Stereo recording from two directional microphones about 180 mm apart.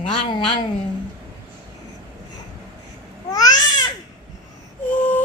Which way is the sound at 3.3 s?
20° left (ahead or behind).